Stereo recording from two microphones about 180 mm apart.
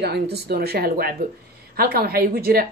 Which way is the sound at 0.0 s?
65° right (ahead or behind).